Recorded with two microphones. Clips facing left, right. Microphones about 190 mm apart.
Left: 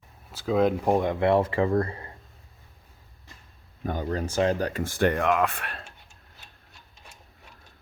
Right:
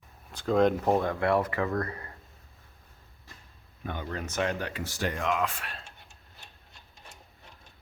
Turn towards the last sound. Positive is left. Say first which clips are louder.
# left 5 dB
turn(degrees=60)  # may be behind; listen again after turning